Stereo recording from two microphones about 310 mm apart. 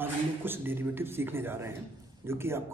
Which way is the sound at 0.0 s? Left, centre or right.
Centre.